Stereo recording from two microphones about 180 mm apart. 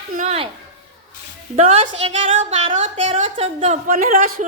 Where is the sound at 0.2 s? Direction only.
35° right (ahead or behind).